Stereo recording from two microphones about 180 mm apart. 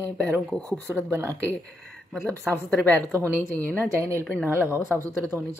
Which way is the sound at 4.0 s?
15° right (ahead or behind).